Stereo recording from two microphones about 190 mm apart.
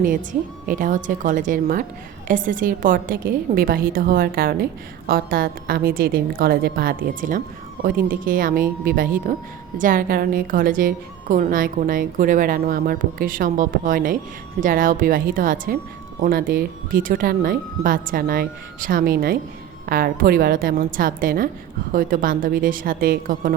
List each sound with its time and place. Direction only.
0.7 s a woman's voice: 45° right (ahead or behind)